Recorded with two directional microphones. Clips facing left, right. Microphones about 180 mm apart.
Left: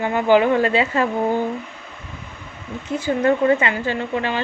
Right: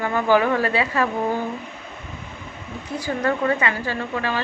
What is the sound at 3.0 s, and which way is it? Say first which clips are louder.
A woman's voice: left 5 dB; 25° left (ahead or behind).